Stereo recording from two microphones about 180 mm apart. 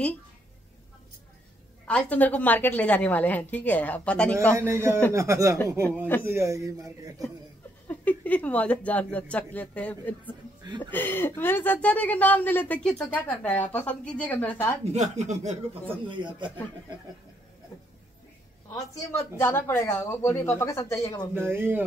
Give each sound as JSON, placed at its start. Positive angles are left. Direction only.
{"t": 1.9, "sound": "speech", "side_deg": 5}
{"t": 4.6, "sound": "speech", "side_deg": -15}
{"t": 5.9, "sound": "speech", "side_deg": 10}
{"t": 6.2, "sound": "speech", "side_deg": -15}
{"t": 7.9, "sound": "speech", "side_deg": 10}
{"t": 14.9, "sound": "speech", "side_deg": -40}
{"t": 16.1, "sound": "speech", "side_deg": -25}
{"t": 19.3, "sound": "speech", "side_deg": 15}
{"t": 21.4, "sound": "speech", "side_deg": -10}